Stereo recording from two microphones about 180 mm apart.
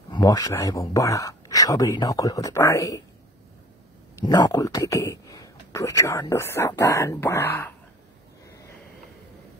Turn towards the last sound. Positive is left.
turn(degrees=15)  # may be behind; listen again after turning